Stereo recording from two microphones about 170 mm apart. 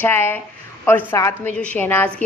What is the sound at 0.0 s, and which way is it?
A woman's voice, 15° left (ahead or behind).